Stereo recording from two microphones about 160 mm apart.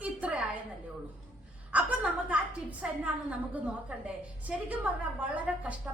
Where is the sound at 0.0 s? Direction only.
10° right (ahead or behind).